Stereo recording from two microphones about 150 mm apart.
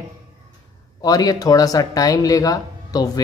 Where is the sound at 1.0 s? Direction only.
25° left (ahead or behind).